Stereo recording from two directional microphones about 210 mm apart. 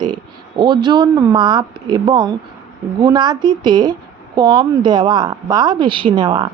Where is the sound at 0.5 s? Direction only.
20° right (ahead or behind).